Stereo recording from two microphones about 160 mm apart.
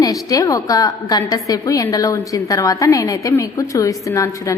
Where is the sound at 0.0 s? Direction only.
20° left (ahead or behind).